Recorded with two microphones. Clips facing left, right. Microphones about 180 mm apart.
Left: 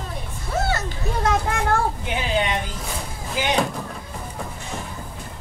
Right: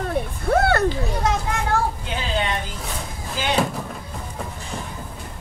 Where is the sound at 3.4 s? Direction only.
15° left (ahead or behind).